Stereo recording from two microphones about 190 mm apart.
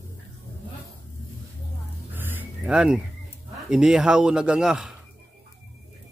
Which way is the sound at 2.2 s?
10° right (ahead or behind).